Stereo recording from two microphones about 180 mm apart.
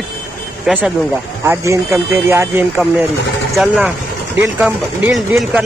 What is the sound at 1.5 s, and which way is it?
Speech, 15° right (ahead or behind).